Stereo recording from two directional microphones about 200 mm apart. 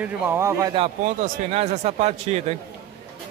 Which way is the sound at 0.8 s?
35° right (ahead or behind).